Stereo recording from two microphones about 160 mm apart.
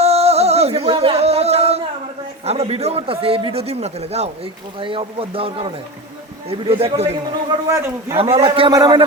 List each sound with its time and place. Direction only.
0.0 s music: 40° right (ahead or behind)
2.4 s a man's voice: 40° right (ahead or behind)
7.7 s a man's voice: 15° right (ahead or behind)
8.1 s a man's voice: 35° right (ahead or behind)